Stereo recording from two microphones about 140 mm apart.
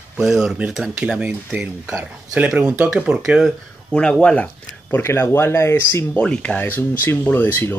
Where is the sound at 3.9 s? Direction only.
5° left (ahead or behind).